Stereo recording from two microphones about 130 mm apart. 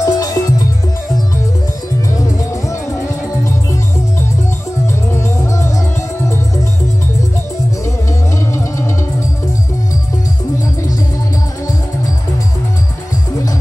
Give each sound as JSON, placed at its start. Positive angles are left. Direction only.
{"t": 0.0, "sound": "music", "side_deg": 25}
{"t": 8.5, "sound": "music", "side_deg": 20}